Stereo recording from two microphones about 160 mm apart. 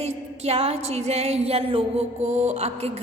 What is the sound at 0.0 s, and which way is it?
A woman's voice, 40° right (ahead or behind).